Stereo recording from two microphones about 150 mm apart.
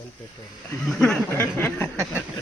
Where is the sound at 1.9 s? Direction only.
20° right (ahead or behind).